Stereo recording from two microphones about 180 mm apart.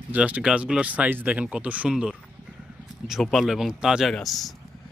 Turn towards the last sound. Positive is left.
turn(degrees=0)  # may be behind; listen again after turning